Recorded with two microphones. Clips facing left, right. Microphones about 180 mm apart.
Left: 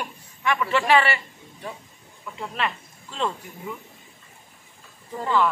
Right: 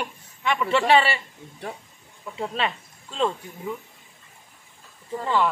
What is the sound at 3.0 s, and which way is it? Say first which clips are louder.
Speech: right 3 dB; 20° right (ahead or behind).